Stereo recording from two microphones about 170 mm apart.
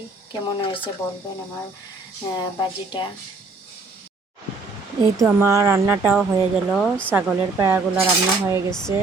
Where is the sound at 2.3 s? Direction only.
25° left (ahead or behind).